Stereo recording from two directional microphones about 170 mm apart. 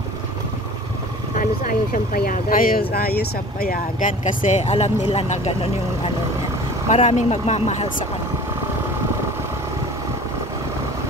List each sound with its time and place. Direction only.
1.4 s speech: 55° left (ahead or behind); by 5.7 s 40° left (ahead or behind)
6.9 s speech: 40° left (ahead or behind)